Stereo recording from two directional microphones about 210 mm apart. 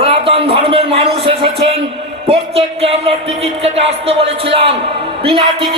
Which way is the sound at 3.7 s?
30° right (ahead or behind).